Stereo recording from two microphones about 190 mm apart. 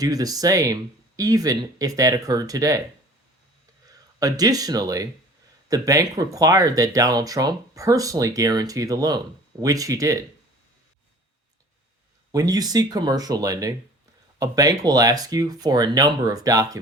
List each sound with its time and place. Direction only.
0.0 s speech: 20° right (ahead or behind)
4.2 s speech: 20° right (ahead or behind)
12.3 s speech: 20° right (ahead or behind)